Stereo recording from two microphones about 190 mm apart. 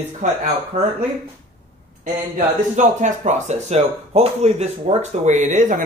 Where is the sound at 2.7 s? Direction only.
40° right (ahead or behind).